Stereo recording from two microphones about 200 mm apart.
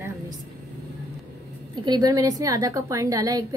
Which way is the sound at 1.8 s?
20° right (ahead or behind).